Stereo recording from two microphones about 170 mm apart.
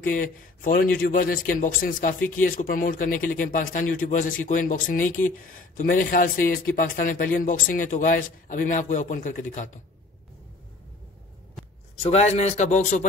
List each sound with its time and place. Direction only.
0.0 s a man's voice: 55° left (ahead or behind)
12.0 s speech: 40° left (ahead or behind)